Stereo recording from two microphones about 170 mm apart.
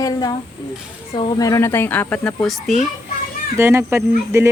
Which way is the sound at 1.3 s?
20° left (ahead or behind).